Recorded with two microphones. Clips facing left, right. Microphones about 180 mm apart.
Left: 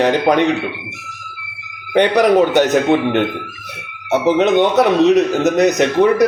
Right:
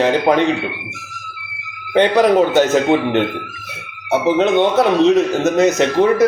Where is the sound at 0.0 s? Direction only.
15° left (ahead or behind).